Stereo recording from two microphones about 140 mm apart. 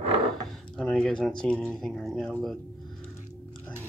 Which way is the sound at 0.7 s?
5° left (ahead or behind).